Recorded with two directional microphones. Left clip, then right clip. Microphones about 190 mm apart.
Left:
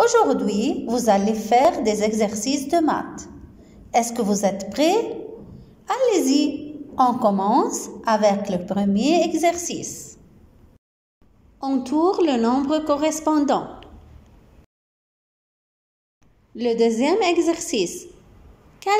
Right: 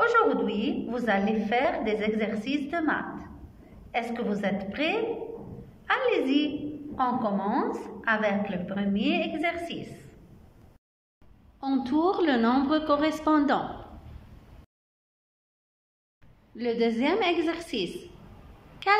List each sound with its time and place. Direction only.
0.0 s a woman's voice: 20° left (ahead or behind)
11.6 s a woman's voice: 10° left (ahead or behind)
16.5 s a woman's voice: 15° left (ahead or behind)